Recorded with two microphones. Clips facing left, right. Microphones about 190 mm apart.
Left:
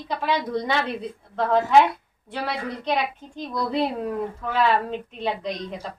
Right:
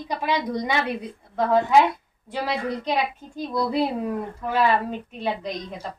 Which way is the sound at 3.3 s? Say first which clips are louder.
Right 2 dB; 10° right (ahead or behind).